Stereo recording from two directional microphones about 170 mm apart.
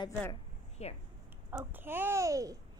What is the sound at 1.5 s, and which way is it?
A child's voice, 10° right (ahead or behind).